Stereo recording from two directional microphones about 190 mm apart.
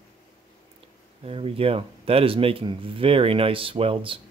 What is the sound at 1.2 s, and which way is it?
Speech, 30° right (ahead or behind).